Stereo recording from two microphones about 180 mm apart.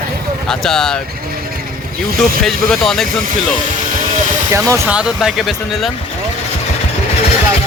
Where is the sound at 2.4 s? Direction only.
Centre (ahead or behind).